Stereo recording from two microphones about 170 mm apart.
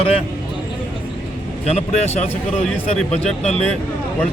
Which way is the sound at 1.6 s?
40° left (ahead or behind).